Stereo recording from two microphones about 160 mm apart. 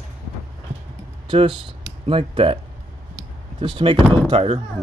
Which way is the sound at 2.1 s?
35° right (ahead or behind).